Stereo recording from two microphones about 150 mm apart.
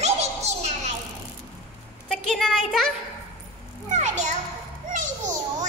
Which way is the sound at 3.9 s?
55° right (ahead or behind).